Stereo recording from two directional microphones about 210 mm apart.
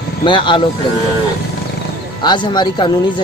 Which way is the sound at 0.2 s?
25° left (ahead or behind).